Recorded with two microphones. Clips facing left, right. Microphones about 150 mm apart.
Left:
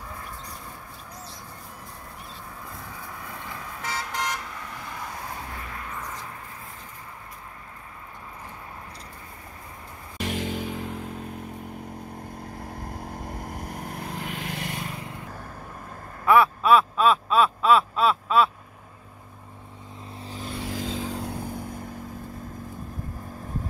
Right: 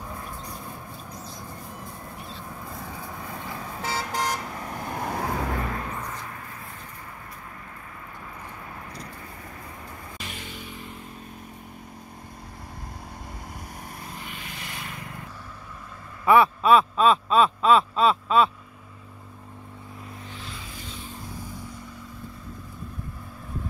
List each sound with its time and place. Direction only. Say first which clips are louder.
0.1 s a sound: right 2 dB; 20° right (ahead or behind)
3.1 s vehicle: right 2 dB; 25° right (ahead or behind); by 5.1 s 45° right (ahead or behind)
5.1 s vehicle: right 9 dB; 80° right
10.1 s music: left 14 dB; 80° left
12.5 s vehicle: left 4 dB; 50° left (ahead or behind); by 14.7 s 75° left (ahead or behind)
14.7 s vehicle: left 4 dB; 35° left (ahead or behind)
16.3 s a sound: right 1 dB; centre (ahead or behind)
20.2 s vehicle: left 9 dB; 40° left (ahead or behind)
20.5 s vehicle: left 10 dB; 80° left; by 21.8 s 55° left (ahead or behind)